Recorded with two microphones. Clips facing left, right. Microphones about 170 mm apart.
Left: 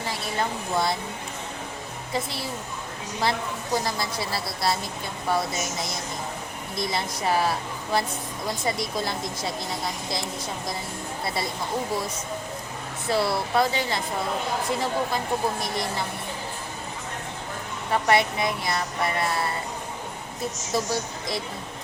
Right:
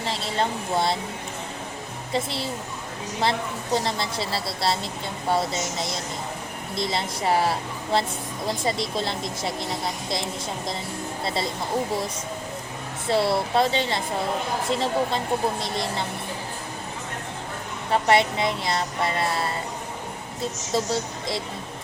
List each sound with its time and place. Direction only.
0.0 s speech: 25° right (ahead or behind)
2.1 s speech: 25° right (ahead or behind)
13.1 s speech: 25° right (ahead or behind)
17.9 s speech: 25° right (ahead or behind)
20.7 s speech: 25° right (ahead or behind)